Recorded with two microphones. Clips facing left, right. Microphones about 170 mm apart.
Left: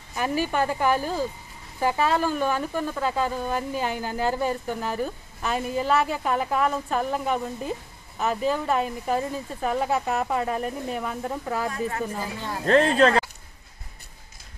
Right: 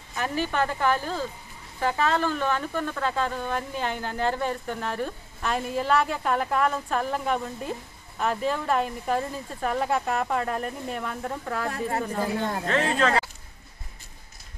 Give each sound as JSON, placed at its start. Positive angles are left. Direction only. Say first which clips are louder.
{"t": 0.1, "sound": "a woman's voice", "louder": "left 2 dB", "side_deg": 10}
{"t": 12.6, "sound": "speech", "louder": "left 8 dB", "side_deg": 35}